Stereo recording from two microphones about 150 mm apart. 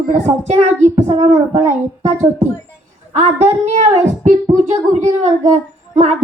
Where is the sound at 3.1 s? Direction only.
50° right (ahead or behind).